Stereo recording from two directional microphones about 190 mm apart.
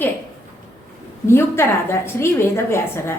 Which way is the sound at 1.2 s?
15° left (ahead or behind).